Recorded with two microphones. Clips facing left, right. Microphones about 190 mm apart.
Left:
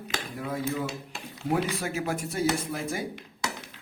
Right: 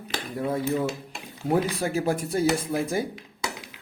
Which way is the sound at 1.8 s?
35° right (ahead or behind).